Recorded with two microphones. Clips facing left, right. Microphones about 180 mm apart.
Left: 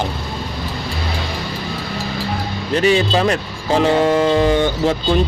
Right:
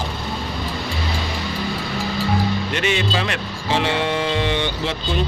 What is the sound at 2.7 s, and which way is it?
Speech, 35° left (ahead or behind).